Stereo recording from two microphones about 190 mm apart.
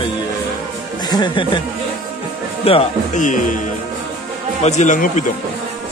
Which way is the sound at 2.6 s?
30° left (ahead or behind).